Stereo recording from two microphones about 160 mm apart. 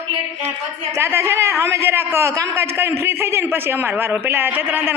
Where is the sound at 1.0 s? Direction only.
15° right (ahead or behind).